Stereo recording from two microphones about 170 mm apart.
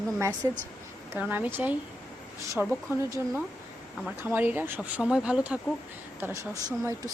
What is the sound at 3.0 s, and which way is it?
Speech, 20° right (ahead or behind).